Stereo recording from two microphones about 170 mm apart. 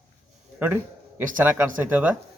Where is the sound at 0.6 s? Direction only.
15° right (ahead or behind).